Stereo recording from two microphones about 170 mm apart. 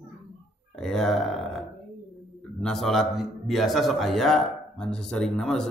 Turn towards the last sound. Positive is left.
turn(degrees=5)  # may be behind; listen again after turning